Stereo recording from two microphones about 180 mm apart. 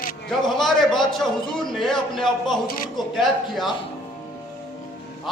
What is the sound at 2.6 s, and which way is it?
Speech, 50° left (ahead or behind).